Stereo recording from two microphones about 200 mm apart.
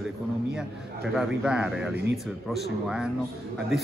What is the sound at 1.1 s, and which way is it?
A man's voice, 5° right (ahead or behind).